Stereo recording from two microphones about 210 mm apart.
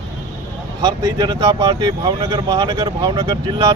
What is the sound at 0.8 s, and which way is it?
Speech, 20° right (ahead or behind).